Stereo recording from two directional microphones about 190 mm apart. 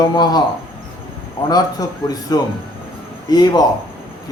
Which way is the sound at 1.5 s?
20° left (ahead or behind).